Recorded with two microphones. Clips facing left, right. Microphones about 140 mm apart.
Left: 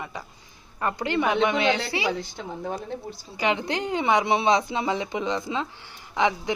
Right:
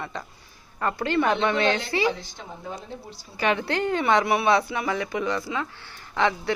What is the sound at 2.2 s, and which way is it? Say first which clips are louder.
Speech: left 7 dB; 60° left (ahead or behind).